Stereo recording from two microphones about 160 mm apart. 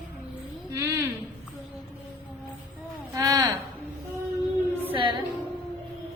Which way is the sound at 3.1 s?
25° right (ahead or behind).